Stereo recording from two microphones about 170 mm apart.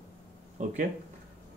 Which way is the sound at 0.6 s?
45° right (ahead or behind).